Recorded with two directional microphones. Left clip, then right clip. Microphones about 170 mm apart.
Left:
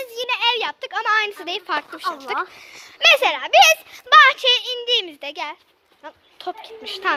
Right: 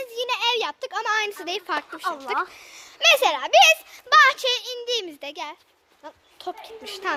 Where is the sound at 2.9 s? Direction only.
30° right (ahead or behind).